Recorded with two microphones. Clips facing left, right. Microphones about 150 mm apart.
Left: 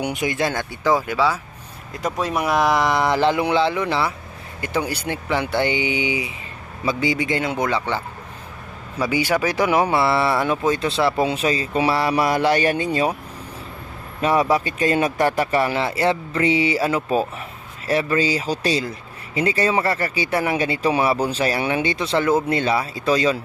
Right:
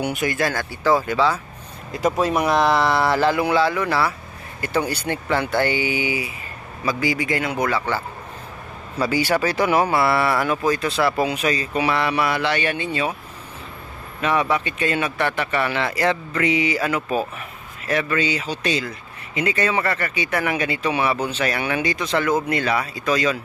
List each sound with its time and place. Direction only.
0.0 s speech: 20° left (ahead or behind)
1.9 s speech: 5° right (ahead or behind); by 13.1 s 40° left (ahead or behind)
14.2 s speech: 35° left (ahead or behind)